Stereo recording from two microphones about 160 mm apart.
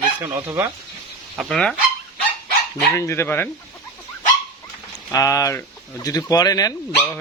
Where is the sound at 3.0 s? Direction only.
15° left (ahead or behind).